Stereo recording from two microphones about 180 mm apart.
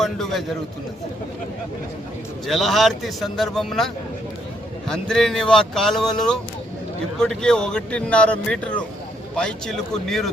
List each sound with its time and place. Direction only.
0.0 s speech: centre (ahead or behind)
2.5 s speech: centre (ahead or behind)